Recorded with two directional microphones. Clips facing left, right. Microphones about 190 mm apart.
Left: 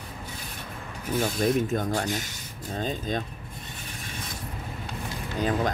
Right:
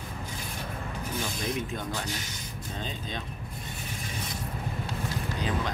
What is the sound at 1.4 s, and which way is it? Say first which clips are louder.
Speech: left 8 dB; 45° left (ahead or behind).